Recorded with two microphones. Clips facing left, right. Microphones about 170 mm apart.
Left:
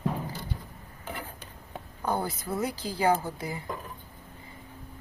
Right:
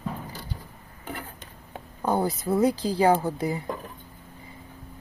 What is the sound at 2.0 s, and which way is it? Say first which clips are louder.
Speech: right 5 dB; 20° right (ahead or behind).